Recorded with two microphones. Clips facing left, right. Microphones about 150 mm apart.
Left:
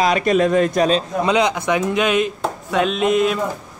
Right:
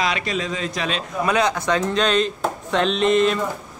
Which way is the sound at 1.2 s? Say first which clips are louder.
Left 1 dB; 15° left (ahead or behind).